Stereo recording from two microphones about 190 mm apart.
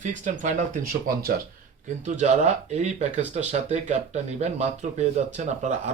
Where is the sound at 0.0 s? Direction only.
40° right (ahead or behind).